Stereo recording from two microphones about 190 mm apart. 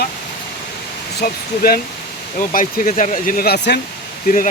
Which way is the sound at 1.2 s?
50° left (ahead or behind).